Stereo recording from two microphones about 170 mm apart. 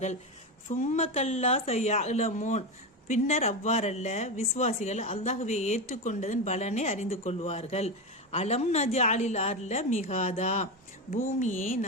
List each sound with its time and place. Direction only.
0.7 s speech: 45° left (ahead or behind)